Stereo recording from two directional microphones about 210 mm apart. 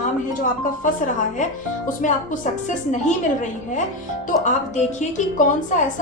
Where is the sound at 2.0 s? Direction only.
35° left (ahead or behind).